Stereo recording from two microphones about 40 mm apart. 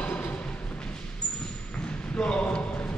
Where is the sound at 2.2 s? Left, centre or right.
Left.